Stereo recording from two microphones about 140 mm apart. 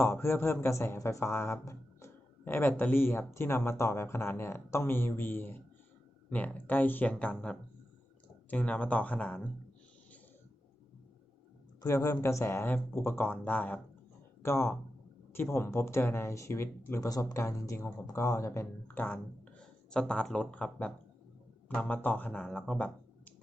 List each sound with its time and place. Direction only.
0.0 s speech: 15° left (ahead or behind)
11.8 s speech: 20° left (ahead or behind); by 23.3 s 5° left (ahead or behind)